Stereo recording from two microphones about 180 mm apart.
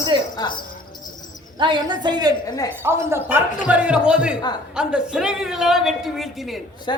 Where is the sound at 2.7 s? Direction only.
15° right (ahead or behind).